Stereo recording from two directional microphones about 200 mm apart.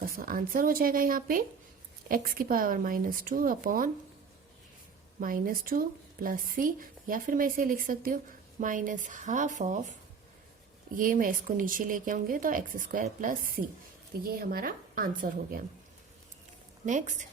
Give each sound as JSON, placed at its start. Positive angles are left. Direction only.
{"t": 0.0, "sound": "speech", "side_deg": -45}
{"t": 5.2, "sound": "a woman's voice", "side_deg": -45}
{"t": 10.9, "sound": "speech", "side_deg": -40}
{"t": 16.8, "sound": "a woman's voice", "side_deg": -40}